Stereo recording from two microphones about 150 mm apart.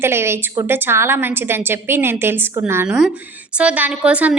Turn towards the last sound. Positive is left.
turn(degrees=-10)  # may be behind; listen again after turning